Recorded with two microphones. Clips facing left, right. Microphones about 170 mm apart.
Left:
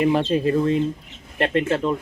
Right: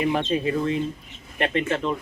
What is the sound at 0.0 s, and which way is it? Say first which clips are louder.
Speech: left 4 dB; 40° left (ahead or behind).